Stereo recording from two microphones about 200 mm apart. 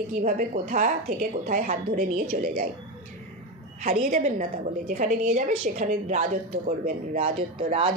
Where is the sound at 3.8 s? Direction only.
35° right (ahead or behind).